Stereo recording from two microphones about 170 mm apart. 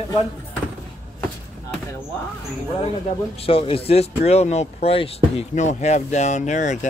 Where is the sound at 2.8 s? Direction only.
35° left (ahead or behind).